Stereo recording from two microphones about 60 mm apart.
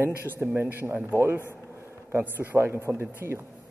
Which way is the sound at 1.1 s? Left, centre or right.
Right.